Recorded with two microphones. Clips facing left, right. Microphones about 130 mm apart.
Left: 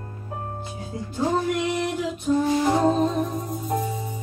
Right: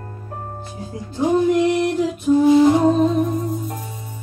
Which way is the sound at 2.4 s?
15° right (ahead or behind).